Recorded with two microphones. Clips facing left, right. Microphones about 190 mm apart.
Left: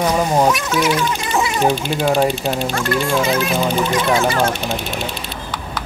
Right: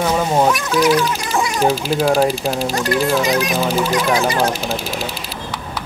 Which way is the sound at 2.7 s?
35° right (ahead or behind).